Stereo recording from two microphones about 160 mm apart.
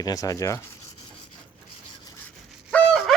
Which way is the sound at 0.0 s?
20° left (ahead or behind).